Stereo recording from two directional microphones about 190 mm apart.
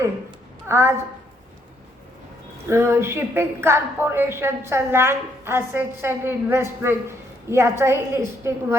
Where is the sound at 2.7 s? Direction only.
15° right (ahead or behind).